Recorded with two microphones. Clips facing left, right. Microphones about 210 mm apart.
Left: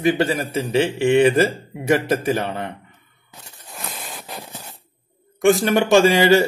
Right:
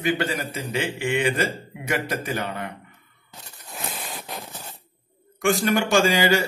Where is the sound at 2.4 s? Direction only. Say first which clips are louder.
Left 4 dB; 25° left (ahead or behind).